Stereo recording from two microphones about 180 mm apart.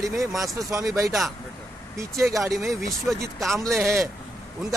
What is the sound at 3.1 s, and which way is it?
Speech, centre (ahead or behind).